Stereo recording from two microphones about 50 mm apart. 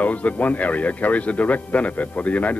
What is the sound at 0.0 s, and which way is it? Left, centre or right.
A man's voice, left.